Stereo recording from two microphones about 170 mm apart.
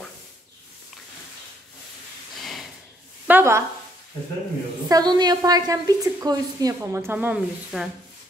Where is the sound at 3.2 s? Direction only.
15° right (ahead or behind).